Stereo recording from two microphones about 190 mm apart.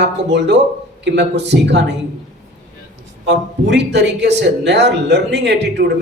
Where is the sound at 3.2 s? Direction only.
65° right (ahead or behind).